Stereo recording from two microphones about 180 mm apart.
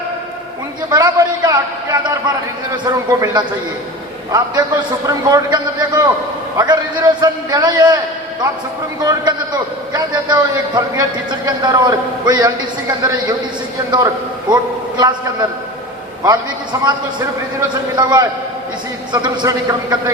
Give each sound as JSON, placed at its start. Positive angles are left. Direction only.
{"t": 0.9, "sound": "a man's voice", "side_deg": -20}
{"t": 9.0, "sound": "a man's voice", "side_deg": -25}
{"t": 14.5, "sound": "a man's voice", "side_deg": -25}
{"t": 16.7, "sound": "a man's voice", "side_deg": -20}
{"t": 17.9, "sound": "a man's voice", "side_deg": -25}